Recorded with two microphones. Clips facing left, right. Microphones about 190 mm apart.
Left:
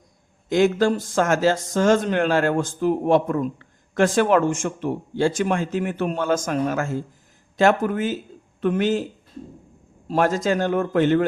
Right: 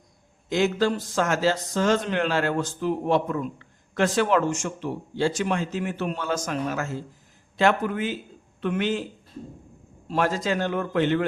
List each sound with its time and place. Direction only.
0.5 s a man's voice: 50° left (ahead or behind)
10.1 s speech: 45° left (ahead or behind)